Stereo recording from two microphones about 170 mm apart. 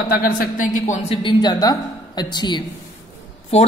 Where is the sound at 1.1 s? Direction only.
25° left (ahead or behind).